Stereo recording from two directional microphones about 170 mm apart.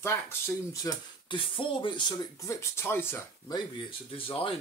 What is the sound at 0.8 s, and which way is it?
Speech, 30° left (ahead or behind).